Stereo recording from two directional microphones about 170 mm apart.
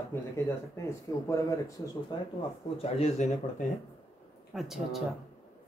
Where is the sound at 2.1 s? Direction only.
25° left (ahead or behind).